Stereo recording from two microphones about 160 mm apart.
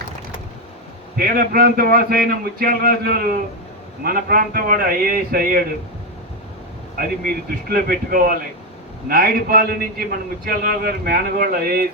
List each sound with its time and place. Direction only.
1.1 s a man's voice: 70° right (ahead or behind)
6.9 s a man's voice: 65° right (ahead or behind)